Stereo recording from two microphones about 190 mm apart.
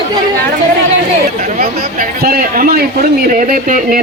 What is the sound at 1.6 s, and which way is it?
A man's voice, 50° right (ahead or behind).